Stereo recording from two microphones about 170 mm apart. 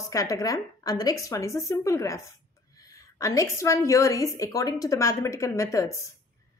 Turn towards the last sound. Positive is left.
turn(degrees=20)  # may be behind; listen again after turning